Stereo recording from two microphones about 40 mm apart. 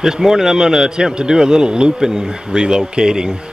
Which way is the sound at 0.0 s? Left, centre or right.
Centre.